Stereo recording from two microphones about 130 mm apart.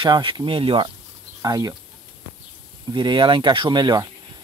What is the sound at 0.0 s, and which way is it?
Speech, 40° right (ahead or behind).